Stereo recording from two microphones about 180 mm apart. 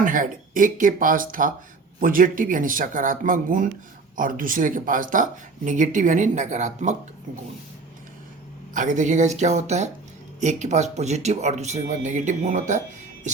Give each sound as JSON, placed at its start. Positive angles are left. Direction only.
{"t": 0.0, "sound": "speech", "side_deg": -50}
{"t": 8.7, "sound": "speech", "side_deg": -45}